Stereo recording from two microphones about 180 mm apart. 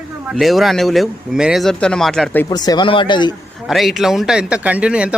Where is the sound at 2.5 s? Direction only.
20° left (ahead or behind).